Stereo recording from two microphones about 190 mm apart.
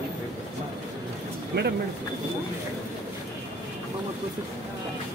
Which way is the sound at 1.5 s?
60° right (ahead or behind).